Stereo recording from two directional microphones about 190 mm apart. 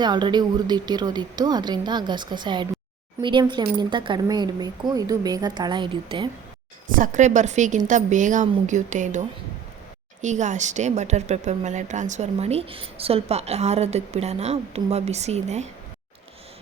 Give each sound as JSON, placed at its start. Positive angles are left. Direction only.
{"t": 0.0, "sound": "a woman's voice", "side_deg": -25}
{"t": 6.8, "sound": "a woman's voice", "side_deg": -45}